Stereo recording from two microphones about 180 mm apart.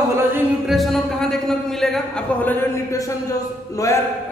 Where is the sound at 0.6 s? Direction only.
Centre (ahead or behind).